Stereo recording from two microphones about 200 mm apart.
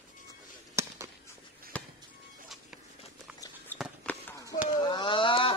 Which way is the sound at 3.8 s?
5° left (ahead or behind).